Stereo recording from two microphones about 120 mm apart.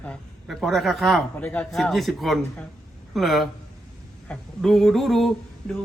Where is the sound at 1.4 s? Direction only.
10° left (ahead or behind).